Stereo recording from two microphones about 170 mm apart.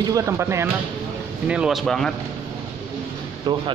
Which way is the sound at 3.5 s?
25° right (ahead or behind).